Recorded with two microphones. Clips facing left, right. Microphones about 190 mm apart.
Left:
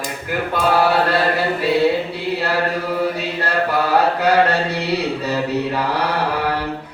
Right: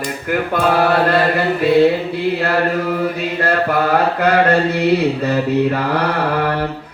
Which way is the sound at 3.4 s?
55° right (ahead or behind).